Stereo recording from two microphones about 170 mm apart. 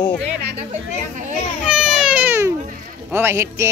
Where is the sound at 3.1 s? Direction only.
15° right (ahead or behind).